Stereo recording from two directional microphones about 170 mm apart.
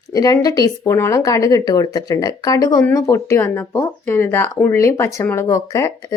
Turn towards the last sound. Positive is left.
turn(degrees=20)  # may be behind; listen again after turning